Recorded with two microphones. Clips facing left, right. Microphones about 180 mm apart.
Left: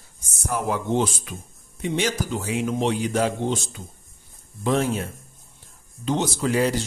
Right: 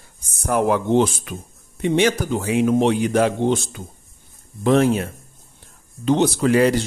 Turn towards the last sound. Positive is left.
turn(degrees=-65)  # may be behind; listen again after turning